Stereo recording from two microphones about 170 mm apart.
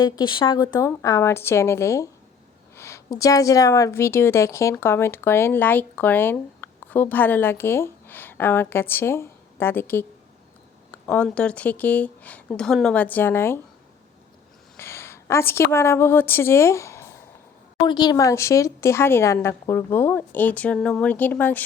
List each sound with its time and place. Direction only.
0.0 s a woman's voice: 25° left (ahead or behind)
14.8 s a sound: 15° left (ahead or behind)
15.7 s speech: 15° left (ahead or behind)